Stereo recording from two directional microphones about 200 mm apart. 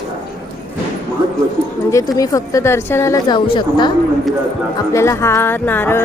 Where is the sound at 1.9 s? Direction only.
15° left (ahead or behind).